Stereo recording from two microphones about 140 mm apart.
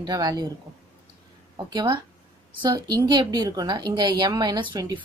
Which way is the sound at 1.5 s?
30° right (ahead or behind).